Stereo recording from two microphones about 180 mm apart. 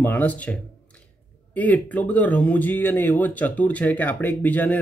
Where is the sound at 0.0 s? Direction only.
10° left (ahead or behind).